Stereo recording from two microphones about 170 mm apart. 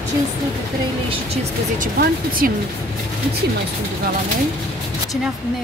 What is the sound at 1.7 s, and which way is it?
Speech, 55° right (ahead or behind).